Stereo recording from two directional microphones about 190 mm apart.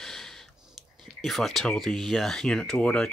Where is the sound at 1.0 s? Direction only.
Centre (ahead or behind).